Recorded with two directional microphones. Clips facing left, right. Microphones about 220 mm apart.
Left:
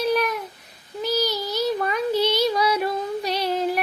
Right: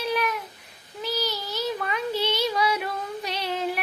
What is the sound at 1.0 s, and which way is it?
Child singing, 40° left (ahead or behind).